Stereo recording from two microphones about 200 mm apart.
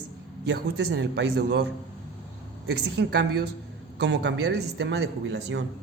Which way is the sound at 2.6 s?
60° right (ahead or behind).